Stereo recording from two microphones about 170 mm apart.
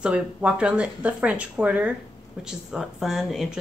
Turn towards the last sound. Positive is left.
turn(degrees=0)  # may be behind; listen again after turning